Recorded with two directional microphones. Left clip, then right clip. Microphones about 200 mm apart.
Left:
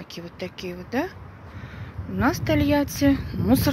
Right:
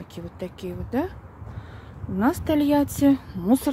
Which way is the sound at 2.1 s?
20° right (ahead or behind).